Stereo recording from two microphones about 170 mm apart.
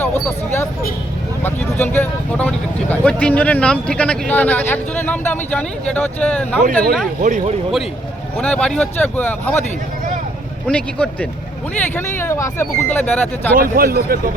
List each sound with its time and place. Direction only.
1.5 s speech: 10° left (ahead or behind)
7.2 s speech: 50° right (ahead or behind)
8.4 s speech: 5° left (ahead or behind)
10.7 s speech: 5° left (ahead or behind)
13.6 s speech: 60° right (ahead or behind)